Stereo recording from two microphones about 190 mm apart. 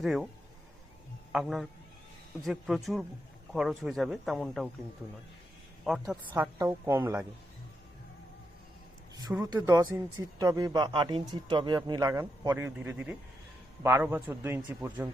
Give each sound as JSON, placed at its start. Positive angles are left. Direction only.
{"t": 0.0, "sound": "speech", "side_deg": 0}
{"t": 1.3, "sound": "speech", "side_deg": 0}
{"t": 5.8, "sound": "speech", "side_deg": -5}
{"t": 6.3, "sound": "a woman's voice", "side_deg": -15}
{"t": 9.6, "sound": "a woman's voice", "side_deg": -15}